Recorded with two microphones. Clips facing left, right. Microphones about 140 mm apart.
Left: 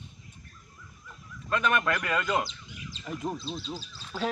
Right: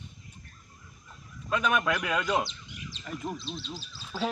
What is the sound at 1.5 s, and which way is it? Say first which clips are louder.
Speech: even; 5° right (ahead or behind).